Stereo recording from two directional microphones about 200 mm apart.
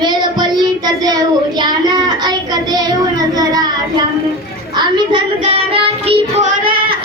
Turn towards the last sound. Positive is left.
turn(degrees=-30)  # may be behind; listen again after turning